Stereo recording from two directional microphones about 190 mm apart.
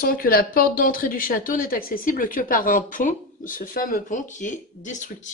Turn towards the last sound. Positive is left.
turn(degrees=40)  # may be behind; listen again after turning